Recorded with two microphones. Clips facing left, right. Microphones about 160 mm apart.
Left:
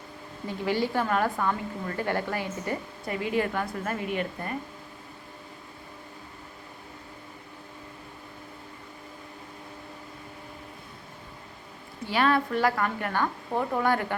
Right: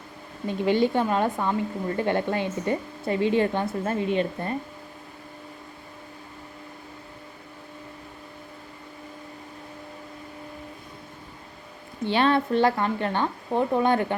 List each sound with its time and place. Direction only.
0.4 s a woman's voice: 20° right (ahead or behind)
12.0 s a woman's voice: 25° right (ahead or behind)